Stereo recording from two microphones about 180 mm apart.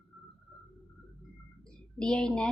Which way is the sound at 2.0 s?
5° left (ahead or behind).